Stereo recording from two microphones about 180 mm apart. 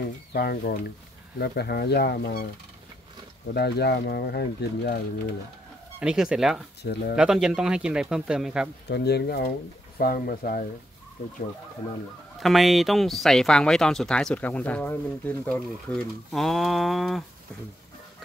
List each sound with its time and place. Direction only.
0.3 s speech: 60° left (ahead or behind)
3.5 s speech: 65° left (ahead or behind)
5.9 s speech: 5° right (ahead or behind)
6.8 s speech: 65° left (ahead or behind)
7.2 s speech: 5° right (ahead or behind)
8.8 s speech: 65° left (ahead or behind)
12.4 s speech: centre (ahead or behind)